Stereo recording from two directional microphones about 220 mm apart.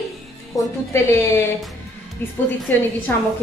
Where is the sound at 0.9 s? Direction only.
10° left (ahead or behind).